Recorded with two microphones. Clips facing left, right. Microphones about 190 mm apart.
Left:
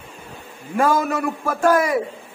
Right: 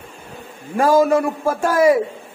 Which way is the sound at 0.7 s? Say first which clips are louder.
Right 5 dB; 35° right (ahead or behind).